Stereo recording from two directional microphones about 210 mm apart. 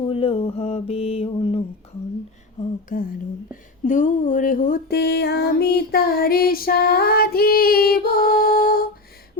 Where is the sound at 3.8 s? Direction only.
35° left (ahead or behind).